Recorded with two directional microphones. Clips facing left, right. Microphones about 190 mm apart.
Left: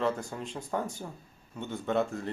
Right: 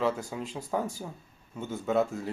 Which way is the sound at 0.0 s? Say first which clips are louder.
Right 1 dB; 5° right (ahead or behind).